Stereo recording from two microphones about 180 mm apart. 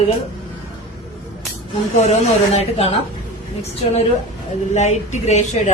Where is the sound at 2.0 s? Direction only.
35° left (ahead or behind).